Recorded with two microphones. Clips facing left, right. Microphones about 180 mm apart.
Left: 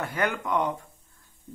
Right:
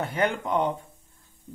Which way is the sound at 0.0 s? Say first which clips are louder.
Right 2 dB; 25° right (ahead or behind).